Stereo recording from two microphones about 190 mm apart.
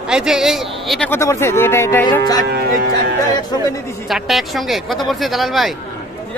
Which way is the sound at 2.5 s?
55° right (ahead or behind).